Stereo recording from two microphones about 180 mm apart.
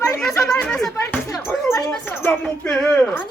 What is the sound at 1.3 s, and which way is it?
Speech, 15° left (ahead or behind).